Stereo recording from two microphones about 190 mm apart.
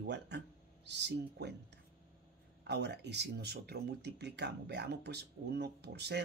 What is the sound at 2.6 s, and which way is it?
Speech, 60° right (ahead or behind).